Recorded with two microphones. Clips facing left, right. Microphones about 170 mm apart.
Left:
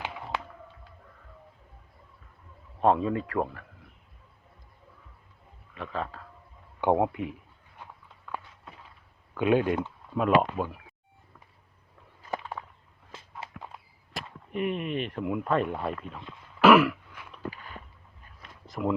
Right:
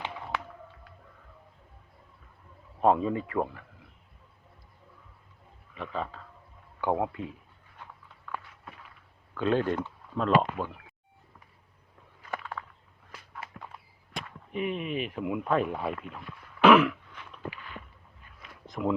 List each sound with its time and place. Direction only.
2.8 s speech: 5° right (ahead or behind)
5.7 s speech: centre (ahead or behind)
6.8 s speech: 20° left (ahead or behind)
9.3 s speech: 15° left (ahead or behind)
12.3 s a sound: 20° left (ahead or behind)
13.1 s walk: 25° left (ahead or behind)
14.1 s whip: 5° left (ahead or behind)
14.5 s speech: centre (ahead or behind)
16.6 s throat clearing: 5° left (ahead or behind)
17.5 s a sound: 40° left (ahead or behind)
18.6 s a sound: centre (ahead or behind)